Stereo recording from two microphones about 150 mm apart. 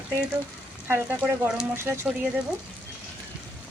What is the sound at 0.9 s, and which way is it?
Speech, 15° right (ahead or behind).